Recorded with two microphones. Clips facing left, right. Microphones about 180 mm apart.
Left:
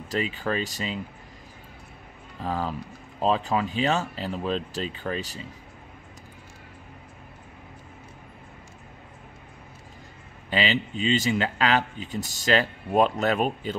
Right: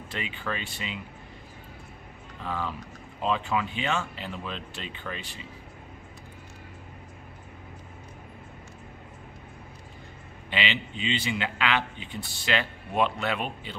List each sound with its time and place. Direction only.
0.1 s speech: 40° left (ahead or behind)
2.4 s speech: 40° left (ahead or behind)
10.5 s speech: 40° left (ahead or behind)